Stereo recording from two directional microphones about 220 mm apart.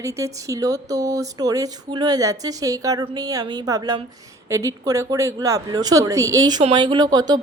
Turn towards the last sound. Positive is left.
turn(degrees=-20)  # may be behind; listen again after turning